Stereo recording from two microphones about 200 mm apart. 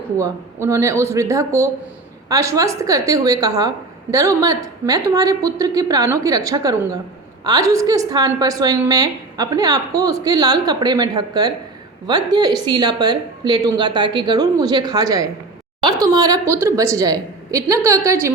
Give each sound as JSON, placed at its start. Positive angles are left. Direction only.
{"t": 0.2, "sound": "a woman's voice", "side_deg": -15}